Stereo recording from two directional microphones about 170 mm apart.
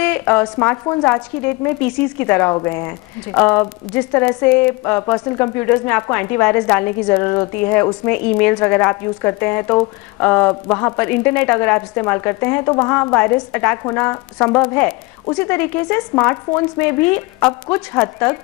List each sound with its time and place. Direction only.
0.0 s a woman's voice: 10° left (ahead or behind)
3.3 s a woman's voice: 5° left (ahead or behind)